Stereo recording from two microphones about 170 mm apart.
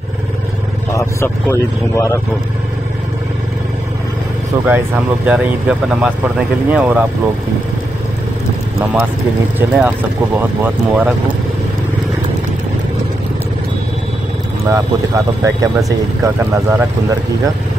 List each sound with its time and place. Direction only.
0.9 s a man's voice: 15° left (ahead or behind)
4.6 s speech: 10° right (ahead or behind)
9.6 s speech: 10° right (ahead or behind)
14.7 s speech: 20° right (ahead or behind)